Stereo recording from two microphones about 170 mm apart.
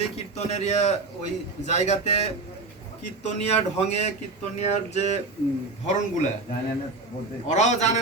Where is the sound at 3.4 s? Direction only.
40° left (ahead or behind).